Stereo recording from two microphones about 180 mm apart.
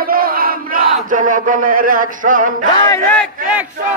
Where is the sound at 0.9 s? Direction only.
50° right (ahead or behind).